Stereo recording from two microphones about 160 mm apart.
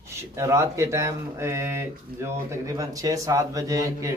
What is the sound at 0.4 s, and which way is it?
A man's voice, 20° right (ahead or behind).